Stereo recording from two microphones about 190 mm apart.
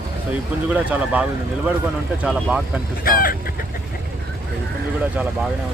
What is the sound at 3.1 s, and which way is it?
Speech, 50° left (ahead or behind).